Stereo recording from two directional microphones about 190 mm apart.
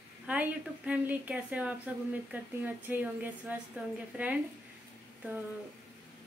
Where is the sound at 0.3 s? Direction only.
10° right (ahead or behind).